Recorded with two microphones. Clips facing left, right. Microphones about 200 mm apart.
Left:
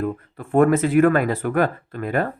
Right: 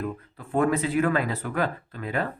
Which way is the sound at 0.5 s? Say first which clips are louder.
Left 7 dB; 50° left (ahead or behind).